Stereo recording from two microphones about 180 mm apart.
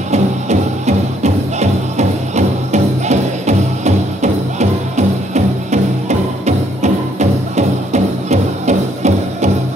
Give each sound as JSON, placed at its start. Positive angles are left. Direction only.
{"t": 0.1, "sound": "music", "side_deg": -40}